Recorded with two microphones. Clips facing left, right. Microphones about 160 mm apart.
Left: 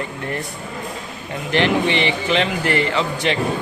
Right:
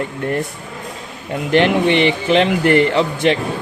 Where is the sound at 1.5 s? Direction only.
55° right (ahead or behind).